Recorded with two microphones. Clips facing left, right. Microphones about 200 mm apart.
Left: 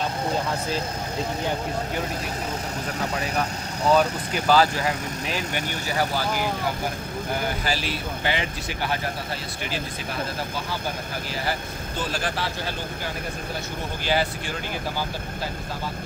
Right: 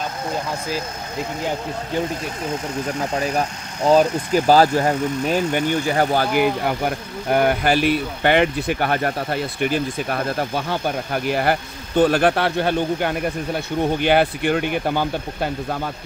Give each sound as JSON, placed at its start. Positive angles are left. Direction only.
{"t": 3.2, "sound": "speech", "side_deg": -35}
{"t": 7.2, "sound": "speech", "side_deg": -60}